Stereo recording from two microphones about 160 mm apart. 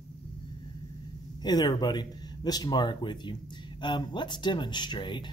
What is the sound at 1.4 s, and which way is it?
Speech, 25° left (ahead or behind).